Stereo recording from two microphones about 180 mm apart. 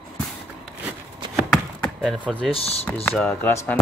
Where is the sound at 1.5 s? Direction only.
Centre (ahead or behind).